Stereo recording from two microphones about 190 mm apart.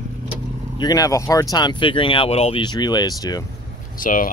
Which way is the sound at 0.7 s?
20° left (ahead or behind).